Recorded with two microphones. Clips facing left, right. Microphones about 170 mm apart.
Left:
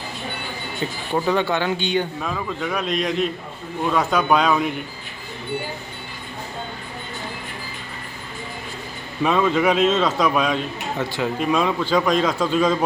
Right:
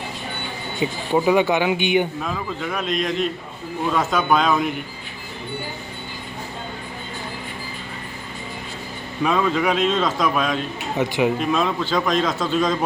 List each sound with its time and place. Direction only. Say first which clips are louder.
0.8 s speech: right 4 dB; 10° right (ahead or behind)
2.2 s a man's voice: left 1 dB; centre (ahead or behind)
9.2 s a man's voice: left 2 dB; centre (ahead or behind)
10.9 s speech: right 5 dB; 20° right (ahead or behind)
11.3 s a man's voice: left 1 dB; 5° left (ahead or behind)